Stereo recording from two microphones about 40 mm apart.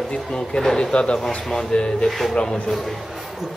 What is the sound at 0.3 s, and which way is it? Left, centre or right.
Speech, centre.